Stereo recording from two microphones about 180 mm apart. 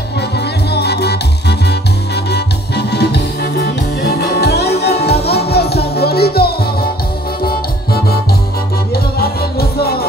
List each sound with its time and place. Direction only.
0.2 s music: 65° left (ahead or behind)